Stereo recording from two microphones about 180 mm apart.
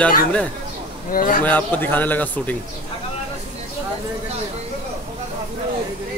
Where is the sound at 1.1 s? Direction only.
50° left (ahead or behind).